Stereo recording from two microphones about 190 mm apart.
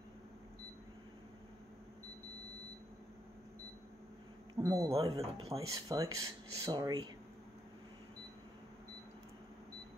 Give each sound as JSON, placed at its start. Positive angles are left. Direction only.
{"t": 4.6, "sound": "speech", "side_deg": -20}